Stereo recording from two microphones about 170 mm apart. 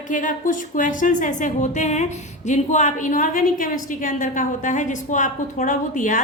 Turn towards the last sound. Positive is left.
turn(degrees=50)  # may be behind; listen again after turning